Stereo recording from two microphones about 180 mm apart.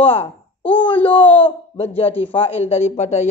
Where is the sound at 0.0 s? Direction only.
35° left (ahead or behind).